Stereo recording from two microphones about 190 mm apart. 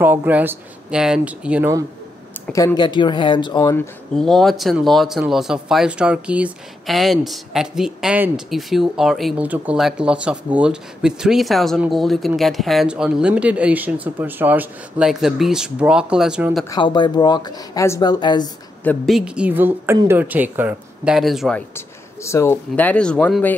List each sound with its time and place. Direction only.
0.0 s speech: 10° right (ahead or behind)
2.5 s speech: 20° left (ahead or behind)
4.1 s speech: centre (ahead or behind)
16.6 s speech: 20° left (ahead or behind)
18.9 s speech: centre (ahead or behind)